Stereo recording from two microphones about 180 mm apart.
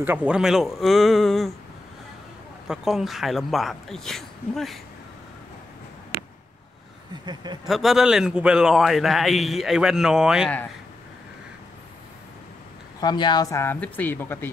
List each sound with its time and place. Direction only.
0.0 s a man's voice: 10° right (ahead or behind)
2.7 s a man's voice: 5° right (ahead or behind)
7.6 s a man's voice: centre (ahead or behind)
13.0 s speech: 25° left (ahead or behind)